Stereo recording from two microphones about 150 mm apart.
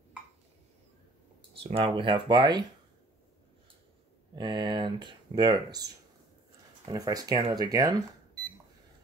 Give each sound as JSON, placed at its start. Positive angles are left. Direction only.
{"t": 1.6, "sound": "speech", "side_deg": -40}
{"t": 4.4, "sound": "speech", "side_deg": -30}
{"t": 6.9, "sound": "speech", "side_deg": -25}